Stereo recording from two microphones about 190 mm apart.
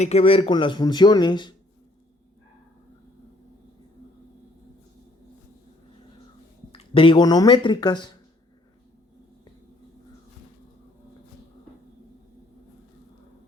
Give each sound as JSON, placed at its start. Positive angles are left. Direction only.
{"t": 0.0, "sound": "speech", "side_deg": 30}
{"t": 6.7, "sound": "speech", "side_deg": 25}